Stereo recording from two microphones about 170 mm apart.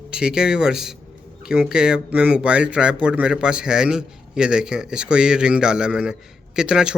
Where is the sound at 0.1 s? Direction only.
5° right (ahead or behind).